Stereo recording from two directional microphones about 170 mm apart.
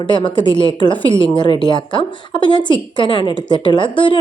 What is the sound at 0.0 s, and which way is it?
A woman's voice, 25° left (ahead or behind).